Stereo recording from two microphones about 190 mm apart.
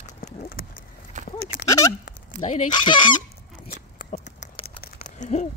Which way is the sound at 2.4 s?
40° left (ahead or behind).